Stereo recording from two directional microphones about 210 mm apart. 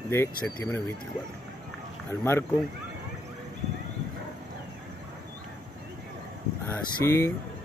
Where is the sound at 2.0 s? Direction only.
10° left (ahead or behind).